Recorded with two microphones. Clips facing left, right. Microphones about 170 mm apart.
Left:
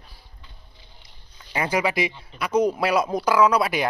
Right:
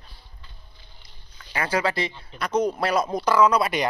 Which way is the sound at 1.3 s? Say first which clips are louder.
Left 1 dB; 20° left (ahead or behind).